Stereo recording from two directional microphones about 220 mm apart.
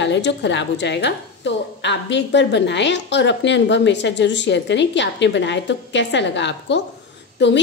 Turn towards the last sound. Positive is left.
turn(degrees=50)  # may be behind; listen again after turning